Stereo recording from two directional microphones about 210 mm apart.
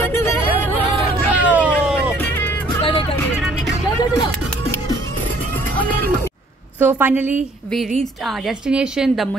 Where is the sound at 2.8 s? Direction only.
25° left (ahead or behind).